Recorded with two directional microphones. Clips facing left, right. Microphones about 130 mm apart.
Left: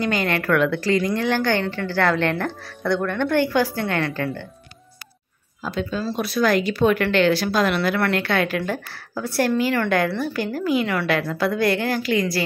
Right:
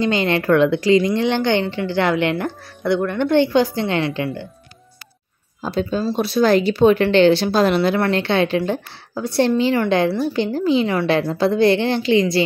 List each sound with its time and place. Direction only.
0.0 s a woman's voice: 25° right (ahead or behind)
5.6 s a woman's voice: 30° right (ahead or behind)